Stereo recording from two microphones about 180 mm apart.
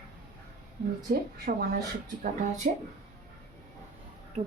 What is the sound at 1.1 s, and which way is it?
Speech, 55° right (ahead or behind).